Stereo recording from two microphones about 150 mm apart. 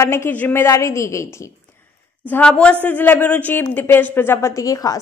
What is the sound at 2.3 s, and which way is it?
A woman's voice, 5° left (ahead or behind).